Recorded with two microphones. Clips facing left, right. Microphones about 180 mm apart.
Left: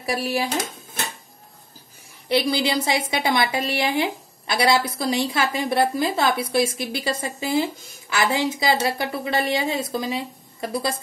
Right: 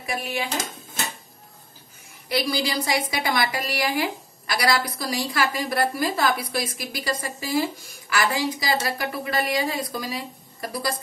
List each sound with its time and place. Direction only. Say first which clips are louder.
0.0 s dishes: left 5 dB; 35° left (ahead or behind)
2.2 s a woman's voice: left 4 dB; 25° left (ahead or behind)